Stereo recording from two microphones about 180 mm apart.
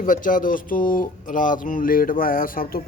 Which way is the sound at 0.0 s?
50° left (ahead or behind).